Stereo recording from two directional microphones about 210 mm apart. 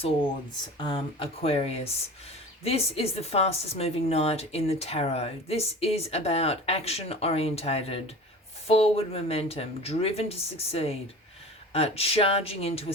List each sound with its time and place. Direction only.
0.8 s a woman's voice: 25° left (ahead or behind)